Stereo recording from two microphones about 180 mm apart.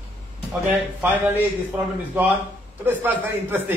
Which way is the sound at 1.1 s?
10° right (ahead or behind).